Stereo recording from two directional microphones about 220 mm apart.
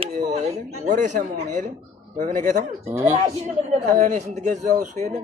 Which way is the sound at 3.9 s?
35° right (ahead or behind).